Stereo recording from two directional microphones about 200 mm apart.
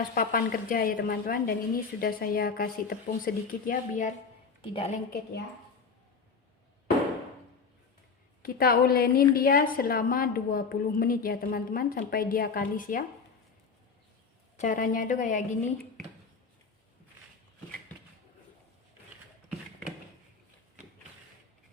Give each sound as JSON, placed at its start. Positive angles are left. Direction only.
{"t": 0.1, "sound": "a woman's voice", "side_deg": 45}
{"t": 4.6, "sound": "a woman's voice", "side_deg": 25}
{"t": 8.4, "sound": "a woman's voice", "side_deg": 50}
{"t": 14.5, "sound": "speech", "side_deg": 40}